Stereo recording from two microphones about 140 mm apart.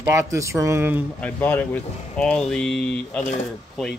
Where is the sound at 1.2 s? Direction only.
10° left (ahead or behind).